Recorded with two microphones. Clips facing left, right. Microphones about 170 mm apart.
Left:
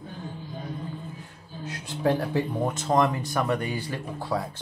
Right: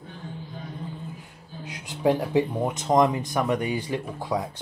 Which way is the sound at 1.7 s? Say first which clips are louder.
Right 2 dB; 15° right (ahead or behind).